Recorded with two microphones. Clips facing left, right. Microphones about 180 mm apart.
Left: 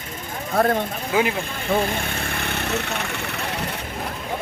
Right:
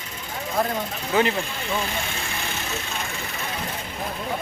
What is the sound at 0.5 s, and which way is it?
Speech, 60° left (ahead or behind).